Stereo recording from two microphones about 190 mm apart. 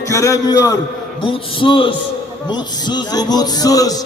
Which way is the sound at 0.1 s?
15° left (ahead or behind).